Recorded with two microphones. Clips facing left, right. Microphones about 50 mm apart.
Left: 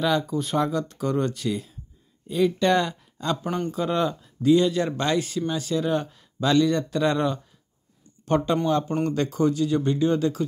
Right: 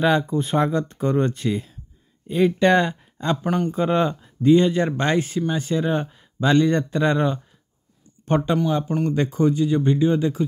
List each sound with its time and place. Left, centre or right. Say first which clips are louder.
0.4 s speech: right 3 dB; right
8.5 s speech: right 1 dB; centre